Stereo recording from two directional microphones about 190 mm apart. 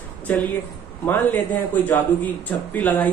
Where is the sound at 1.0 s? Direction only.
10° left (ahead or behind).